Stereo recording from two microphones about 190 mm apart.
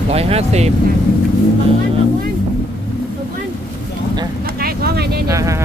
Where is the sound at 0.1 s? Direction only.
30° right (ahead or behind).